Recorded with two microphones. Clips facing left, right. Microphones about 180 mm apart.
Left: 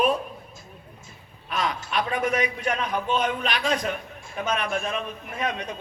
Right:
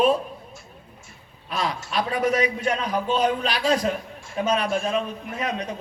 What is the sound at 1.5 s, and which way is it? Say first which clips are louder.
A man's voice: right 1 dB; 30° right (ahead or behind).